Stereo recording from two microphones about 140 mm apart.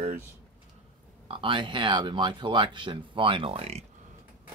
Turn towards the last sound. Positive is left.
turn(degrees=-45)  # may be behind; listen again after turning